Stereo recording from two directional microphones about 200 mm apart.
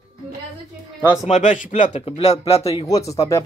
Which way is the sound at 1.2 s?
35° left (ahead or behind).